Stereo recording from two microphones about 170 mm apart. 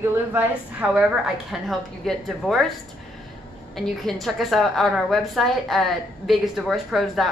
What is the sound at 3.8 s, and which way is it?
A woman's voice, centre (ahead or behind).